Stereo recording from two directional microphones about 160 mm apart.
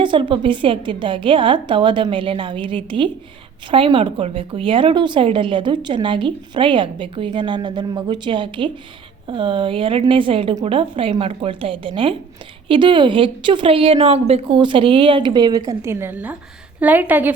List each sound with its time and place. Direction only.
0.0 s a woman's voice: 30° right (ahead or behind); by 17.3 s 10° right (ahead or behind)